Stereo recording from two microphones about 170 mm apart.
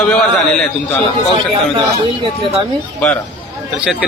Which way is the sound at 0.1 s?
5° left (ahead or behind).